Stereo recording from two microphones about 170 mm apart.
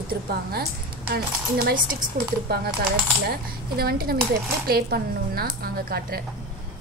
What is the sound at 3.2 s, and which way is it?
A woman's voice, 65° right (ahead or behind).